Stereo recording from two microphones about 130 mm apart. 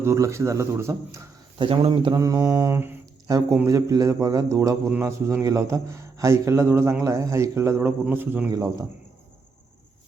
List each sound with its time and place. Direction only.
0.0 s speech: 20° right (ahead or behind)
1.5 s speech: 45° right (ahead or behind)
2.1 s speech: 25° right (ahead or behind)